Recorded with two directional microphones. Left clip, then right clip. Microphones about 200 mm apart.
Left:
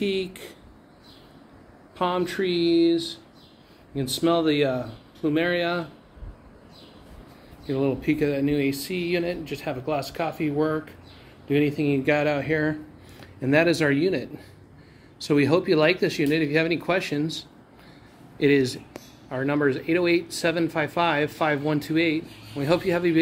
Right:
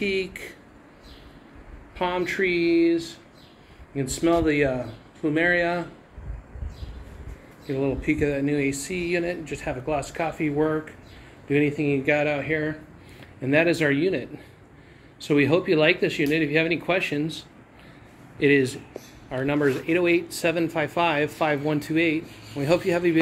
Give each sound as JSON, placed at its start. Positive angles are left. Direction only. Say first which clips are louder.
{"t": 0.0, "sound": "speech", "louder": "right 1 dB", "side_deg": 25}
{"t": 2.0, "sound": "speech", "louder": "even", "side_deg": 20}
{"t": 7.6, "sound": "speech", "louder": "left 1 dB", "side_deg": 25}
{"t": 13.4, "sound": "speech", "louder": "even", "side_deg": 20}